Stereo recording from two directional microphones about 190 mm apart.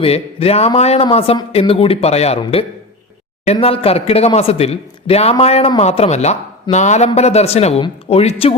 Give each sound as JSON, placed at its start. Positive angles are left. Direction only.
{"t": 0.0, "sound": "speech", "side_deg": 30}